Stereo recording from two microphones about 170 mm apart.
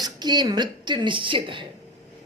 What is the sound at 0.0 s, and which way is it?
A woman's voice, 25° right (ahead or behind).